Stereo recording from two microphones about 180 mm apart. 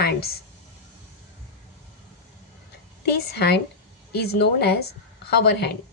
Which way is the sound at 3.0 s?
65° left (ahead or behind).